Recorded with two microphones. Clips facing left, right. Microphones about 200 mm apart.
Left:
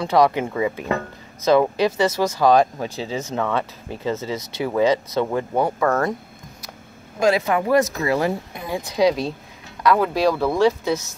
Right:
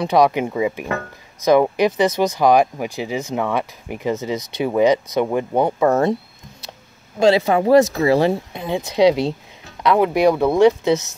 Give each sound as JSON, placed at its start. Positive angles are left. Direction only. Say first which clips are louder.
{"t": 0.0, "sound": "speech", "louder": "right 2 dB", "side_deg": -15}
{"t": 7.2, "sound": "speech", "louder": "right 4 dB", "side_deg": -30}